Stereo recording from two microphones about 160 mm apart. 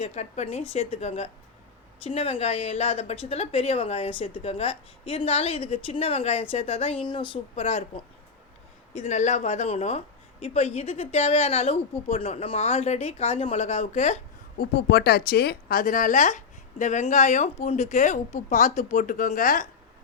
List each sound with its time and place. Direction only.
0.0 s a woman's voice: 45° left (ahead or behind)
9.0 s a woman's voice: 45° left (ahead or behind)
14.6 s speech: 75° left (ahead or behind); by 19.6 s 55° left (ahead or behind)